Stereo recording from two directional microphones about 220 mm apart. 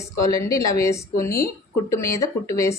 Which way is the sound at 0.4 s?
15° left (ahead or behind).